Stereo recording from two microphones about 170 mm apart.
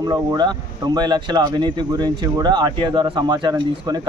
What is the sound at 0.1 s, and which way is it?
Speech, 25° right (ahead or behind).